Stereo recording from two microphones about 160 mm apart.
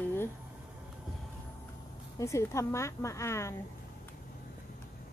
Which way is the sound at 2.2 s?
20° left (ahead or behind).